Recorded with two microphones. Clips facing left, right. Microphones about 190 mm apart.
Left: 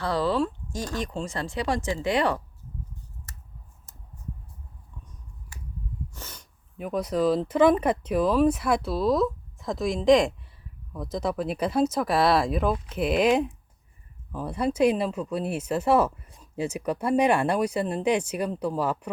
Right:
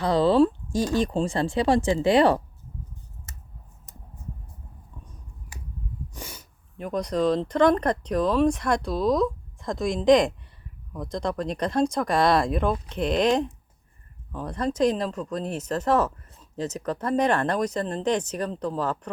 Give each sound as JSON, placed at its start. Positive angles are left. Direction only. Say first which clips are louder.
{"t": 0.0, "sound": "a woman's voice", "louder": "right 6 dB", "side_deg": -20}
{"t": 3.3, "sound": "scissors", "louder": "right 2 dB", "side_deg": -20}
{"t": 6.1, "sound": "sneeze", "louder": "right 4 dB", "side_deg": -10}
{"t": 6.7, "sound": "speech", "louder": "even", "side_deg": 5}